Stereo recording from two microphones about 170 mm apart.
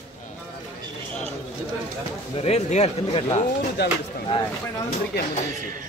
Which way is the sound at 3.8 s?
80° left.